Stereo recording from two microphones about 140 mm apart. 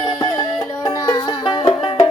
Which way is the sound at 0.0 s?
30° left (ahead or behind).